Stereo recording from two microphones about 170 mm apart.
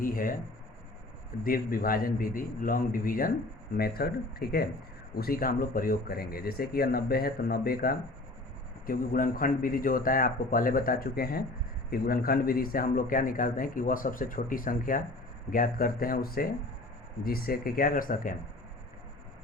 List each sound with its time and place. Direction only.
0.0 s writing: 55° left (ahead or behind)
1.5 s a man's voice: 60° left (ahead or behind)